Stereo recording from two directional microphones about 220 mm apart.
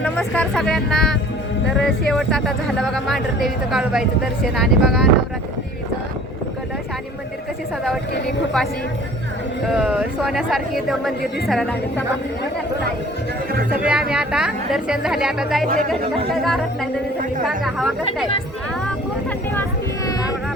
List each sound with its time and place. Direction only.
0.0 s speech: 5° left (ahead or behind)
9.6 s speech: 5° right (ahead or behind)
13.8 s speech: 5° right (ahead or behind)
15.6 s speech: 40° right (ahead or behind)
15.9 s speech: centre (ahead or behind)